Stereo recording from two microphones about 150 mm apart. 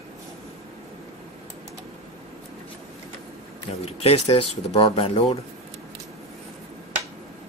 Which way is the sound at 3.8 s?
40° left (ahead or behind).